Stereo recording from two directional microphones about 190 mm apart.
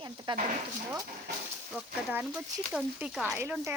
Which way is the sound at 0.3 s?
25° right (ahead or behind).